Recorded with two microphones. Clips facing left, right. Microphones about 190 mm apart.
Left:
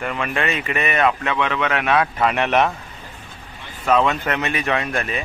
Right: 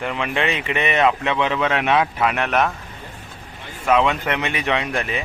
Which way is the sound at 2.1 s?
Centre (ahead or behind).